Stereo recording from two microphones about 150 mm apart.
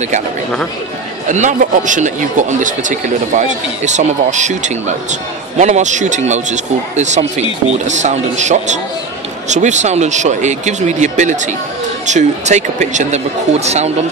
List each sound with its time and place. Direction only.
1.3 s speech: 55° right (ahead or behind)